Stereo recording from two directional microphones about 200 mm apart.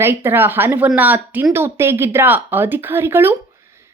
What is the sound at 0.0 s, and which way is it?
Speech, 10° right (ahead or behind).